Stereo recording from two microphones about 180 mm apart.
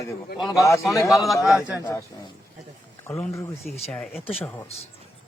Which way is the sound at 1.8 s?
15° left (ahead or behind).